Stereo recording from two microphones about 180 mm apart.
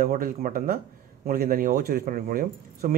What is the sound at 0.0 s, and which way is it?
Speech, 50° right (ahead or behind).